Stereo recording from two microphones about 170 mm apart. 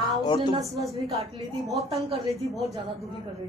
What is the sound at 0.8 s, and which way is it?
Speech, centre (ahead or behind).